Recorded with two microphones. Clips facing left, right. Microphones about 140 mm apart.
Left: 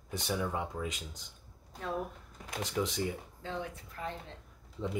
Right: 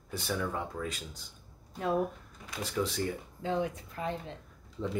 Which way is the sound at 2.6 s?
20° left (ahead or behind).